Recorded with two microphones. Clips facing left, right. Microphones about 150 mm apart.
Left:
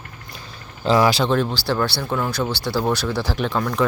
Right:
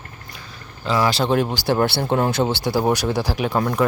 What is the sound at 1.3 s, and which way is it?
Speech, 15° right (ahead or behind).